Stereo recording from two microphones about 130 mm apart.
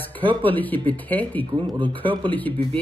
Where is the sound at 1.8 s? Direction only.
40° right (ahead or behind).